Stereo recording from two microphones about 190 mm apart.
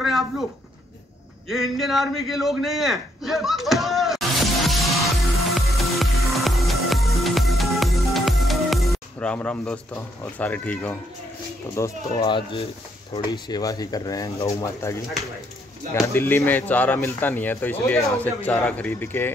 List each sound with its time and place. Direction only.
1.5 s a sound: centre (ahead or behind)
5.8 s music: centre (ahead or behind)
11.7 s speech: 20° left (ahead or behind)
16.1 s speech: 10° left (ahead or behind)